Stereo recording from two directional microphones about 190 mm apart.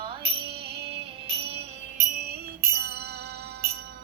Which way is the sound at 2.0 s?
55° right (ahead or behind).